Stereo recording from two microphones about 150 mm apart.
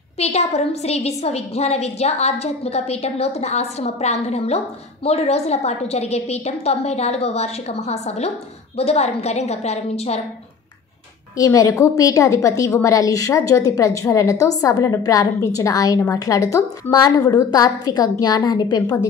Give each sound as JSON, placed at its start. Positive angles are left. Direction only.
{"t": 0.2, "sound": "a woman's voice", "side_deg": 45}
{"t": 11.3, "sound": "a woman's voice", "side_deg": 25}